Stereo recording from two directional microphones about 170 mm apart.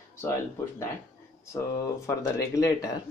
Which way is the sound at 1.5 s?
15° left (ahead or behind).